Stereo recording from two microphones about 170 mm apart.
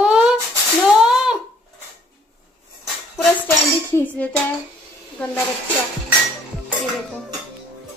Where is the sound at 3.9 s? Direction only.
10° left (ahead or behind).